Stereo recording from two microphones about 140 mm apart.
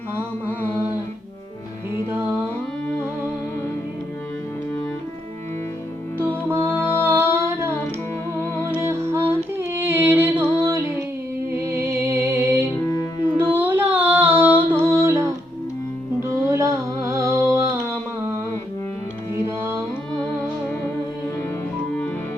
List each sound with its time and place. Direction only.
0.4 s mantra: 10° left (ahead or behind)
6.1 s music: 15° right (ahead or behind)
8.4 s music: 15° left (ahead or behind)
8.7 s music: 20° right (ahead or behind)
13.4 s child singing: 15° right (ahead or behind)
14.7 s music: 20° right (ahead or behind)
17.1 s a sound: 20° right (ahead or behind)
19.5 s music: 20° right (ahead or behind)